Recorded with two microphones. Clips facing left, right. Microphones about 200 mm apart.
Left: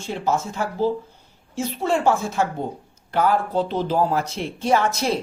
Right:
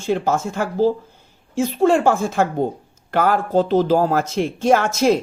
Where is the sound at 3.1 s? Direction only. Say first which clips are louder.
Right 2 dB; 90° right.